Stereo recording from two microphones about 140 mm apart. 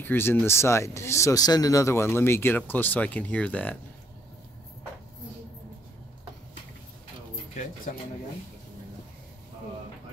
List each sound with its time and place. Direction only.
0.0 s speech: 15° left (ahead or behind)